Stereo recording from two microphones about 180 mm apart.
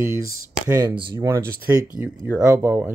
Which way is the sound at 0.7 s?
25° right (ahead or behind).